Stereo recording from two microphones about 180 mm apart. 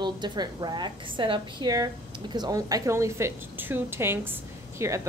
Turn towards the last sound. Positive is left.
turn(degrees=-15)  # may be behind; listen again after turning